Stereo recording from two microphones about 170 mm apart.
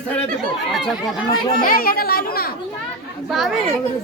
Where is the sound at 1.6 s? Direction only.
60° left (ahead or behind).